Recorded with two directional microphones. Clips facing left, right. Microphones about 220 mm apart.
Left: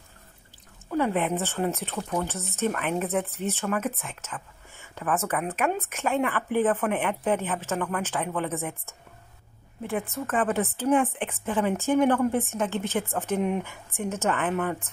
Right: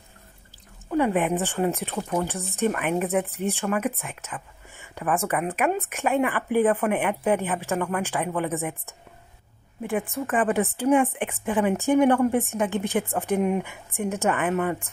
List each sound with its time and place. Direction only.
0.8 s speech: 15° right (ahead or behind)
9.8 s speech: 15° right (ahead or behind)